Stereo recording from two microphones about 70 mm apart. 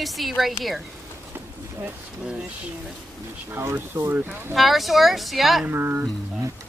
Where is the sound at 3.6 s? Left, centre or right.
Right.